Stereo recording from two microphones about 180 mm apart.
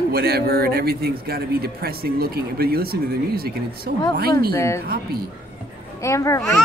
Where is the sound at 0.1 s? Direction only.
60° right (ahead or behind).